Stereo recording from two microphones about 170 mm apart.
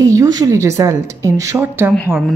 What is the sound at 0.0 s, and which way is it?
Speech, 20° right (ahead or behind).